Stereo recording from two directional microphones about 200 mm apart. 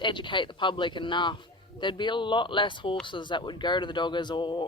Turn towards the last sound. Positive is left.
turn(degrees=25)  # may be behind; listen again after turning